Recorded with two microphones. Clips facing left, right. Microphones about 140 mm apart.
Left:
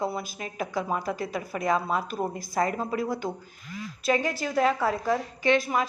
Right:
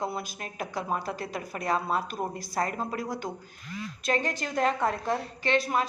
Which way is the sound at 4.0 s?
10° left (ahead or behind).